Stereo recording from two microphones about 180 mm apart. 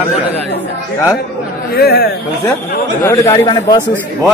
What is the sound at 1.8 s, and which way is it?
Speech, 60° left (ahead or behind).